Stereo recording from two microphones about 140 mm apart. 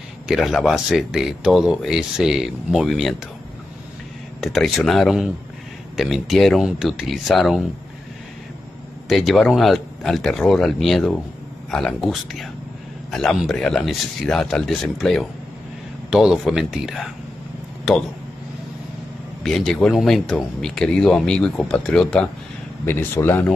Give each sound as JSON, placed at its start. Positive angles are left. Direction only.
{"t": 0.3, "sound": "speech", "side_deg": 0}
{"t": 4.4, "sound": "speech", "side_deg": 0}
{"t": 9.1, "sound": "speech", "side_deg": 0}
{"t": 19.4, "sound": "speech", "side_deg": 5}
{"t": 22.8, "sound": "speech", "side_deg": 15}